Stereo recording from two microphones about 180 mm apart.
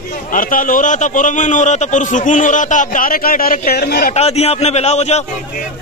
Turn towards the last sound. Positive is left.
turn(degrees=35)  # may be behind; listen again after turning